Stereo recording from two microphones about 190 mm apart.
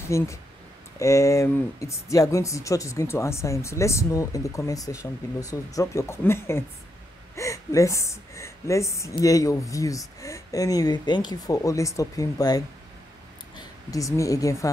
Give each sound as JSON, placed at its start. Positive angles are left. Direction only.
{"t": 0.1, "sound": "a woman's voice", "side_deg": 15}